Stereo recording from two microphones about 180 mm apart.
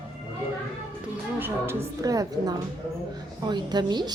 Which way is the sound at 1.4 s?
15° right (ahead or behind).